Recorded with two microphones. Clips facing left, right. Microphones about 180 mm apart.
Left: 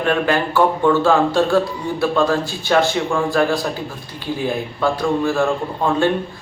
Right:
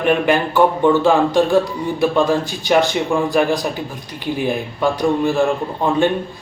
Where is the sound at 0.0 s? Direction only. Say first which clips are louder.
Right 2 dB; 15° right (ahead or behind).